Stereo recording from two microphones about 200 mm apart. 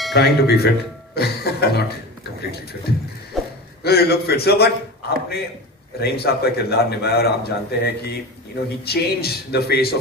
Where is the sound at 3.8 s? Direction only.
50° left (ahead or behind).